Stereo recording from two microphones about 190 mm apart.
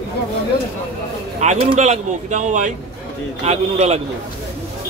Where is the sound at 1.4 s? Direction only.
35° right (ahead or behind).